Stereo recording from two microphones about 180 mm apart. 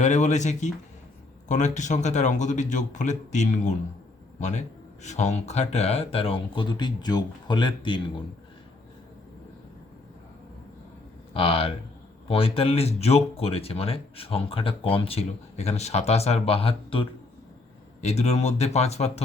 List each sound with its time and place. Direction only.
0.0 s speech: 40° left (ahead or behind)
11.3 s speech: 30° left (ahead or behind)